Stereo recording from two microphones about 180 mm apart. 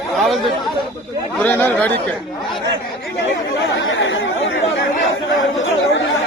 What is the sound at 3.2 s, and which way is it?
Speech, 85° left.